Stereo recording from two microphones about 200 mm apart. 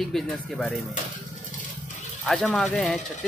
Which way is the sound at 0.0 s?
Centre (ahead or behind).